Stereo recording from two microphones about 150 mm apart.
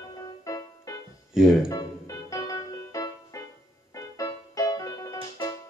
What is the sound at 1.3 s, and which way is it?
Speech, 5° right (ahead or behind).